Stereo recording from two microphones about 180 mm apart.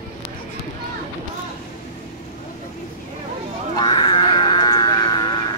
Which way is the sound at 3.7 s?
25° left (ahead or behind).